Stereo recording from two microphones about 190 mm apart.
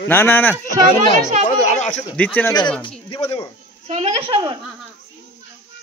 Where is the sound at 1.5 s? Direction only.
35° left (ahead or behind).